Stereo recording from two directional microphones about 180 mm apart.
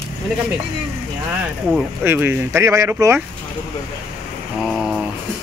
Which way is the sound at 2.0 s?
10° right (ahead or behind).